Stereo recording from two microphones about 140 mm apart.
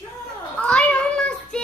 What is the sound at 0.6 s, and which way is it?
Child singing, 5° left (ahead or behind).